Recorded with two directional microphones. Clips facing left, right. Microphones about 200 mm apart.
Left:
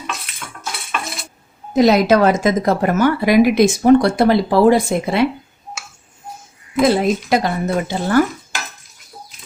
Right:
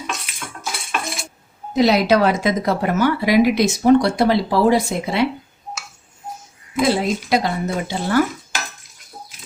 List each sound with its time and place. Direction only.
0.3 s cutlery: centre (ahead or behind)
1.7 s speech: 45° left (ahead or behind)
6.9 s speech: 50° left (ahead or behind)